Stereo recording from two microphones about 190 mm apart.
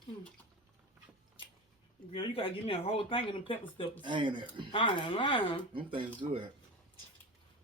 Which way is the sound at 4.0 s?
25° right (ahead or behind).